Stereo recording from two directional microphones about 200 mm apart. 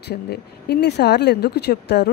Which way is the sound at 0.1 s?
55° left (ahead or behind).